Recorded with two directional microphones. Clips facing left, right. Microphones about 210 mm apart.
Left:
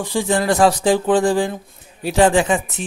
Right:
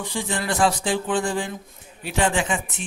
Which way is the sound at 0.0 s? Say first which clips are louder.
Left 8 dB; 40° left (ahead or behind).